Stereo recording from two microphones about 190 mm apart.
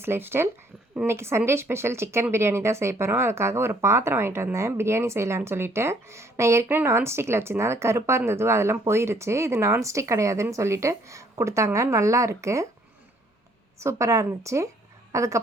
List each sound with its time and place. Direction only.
0.0 s speech: 10° right (ahead or behind)
13.7 s a woman's voice: 15° right (ahead or behind)